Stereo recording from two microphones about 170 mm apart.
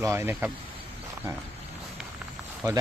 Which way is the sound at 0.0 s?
15° right (ahead or behind).